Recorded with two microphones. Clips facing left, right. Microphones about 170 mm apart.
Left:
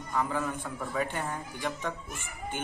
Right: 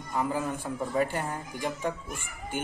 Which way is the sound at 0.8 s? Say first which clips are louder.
Right 5 dB; 35° right (ahead or behind).